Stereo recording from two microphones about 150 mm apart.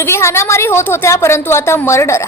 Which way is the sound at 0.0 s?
20° left (ahead or behind).